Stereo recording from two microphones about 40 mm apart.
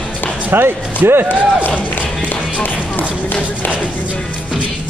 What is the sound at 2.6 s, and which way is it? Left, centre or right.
Speech, left.